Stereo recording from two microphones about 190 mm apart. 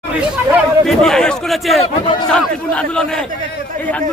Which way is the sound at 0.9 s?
5° left (ahead or behind).